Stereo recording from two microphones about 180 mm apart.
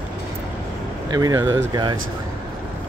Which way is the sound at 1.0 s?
20° right (ahead or behind).